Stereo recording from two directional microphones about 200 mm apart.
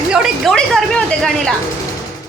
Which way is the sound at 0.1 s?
Centre (ahead or behind).